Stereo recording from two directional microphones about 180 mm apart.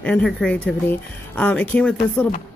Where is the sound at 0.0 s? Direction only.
5° left (ahead or behind).